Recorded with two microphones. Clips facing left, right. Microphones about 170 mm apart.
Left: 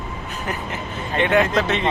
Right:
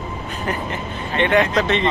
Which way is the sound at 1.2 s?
5° left (ahead or behind).